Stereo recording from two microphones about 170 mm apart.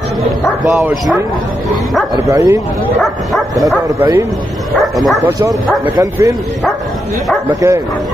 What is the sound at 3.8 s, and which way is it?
A man's voice, 15° right (ahead or behind).